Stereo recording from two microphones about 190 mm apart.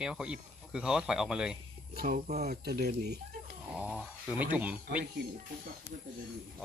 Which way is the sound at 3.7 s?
5° right (ahead or behind).